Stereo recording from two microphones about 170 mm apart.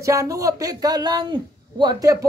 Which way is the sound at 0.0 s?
20° right (ahead or behind).